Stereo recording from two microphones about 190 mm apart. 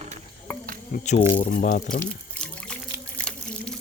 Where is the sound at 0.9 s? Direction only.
40° left (ahead or behind).